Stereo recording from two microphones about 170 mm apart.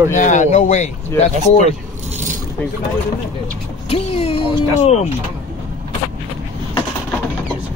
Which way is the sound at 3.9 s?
35° left (ahead or behind).